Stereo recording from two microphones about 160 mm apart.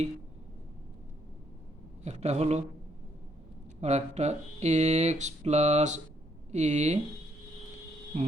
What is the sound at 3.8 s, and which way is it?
Speech, 45° right (ahead or behind).